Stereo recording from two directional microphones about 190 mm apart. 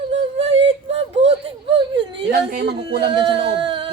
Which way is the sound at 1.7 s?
25° right (ahead or behind).